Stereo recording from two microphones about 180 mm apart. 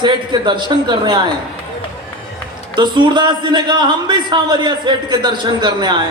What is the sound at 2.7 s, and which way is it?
A man's voice, 25° right (ahead or behind).